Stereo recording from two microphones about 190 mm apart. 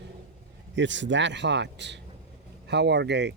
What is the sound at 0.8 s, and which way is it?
Speech, 70° right (ahead or behind).